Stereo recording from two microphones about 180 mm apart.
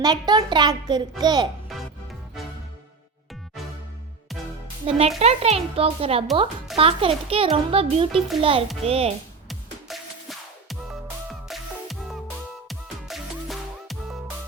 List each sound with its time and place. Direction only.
0.0 s a child's voice: 25° right (ahead or behind)
4.9 s a child's voice: 35° right (ahead or behind)
9.5 s music: centre (ahead or behind)